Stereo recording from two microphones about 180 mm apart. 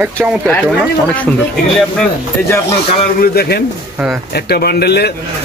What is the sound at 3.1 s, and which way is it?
Speech, 60° left (ahead or behind).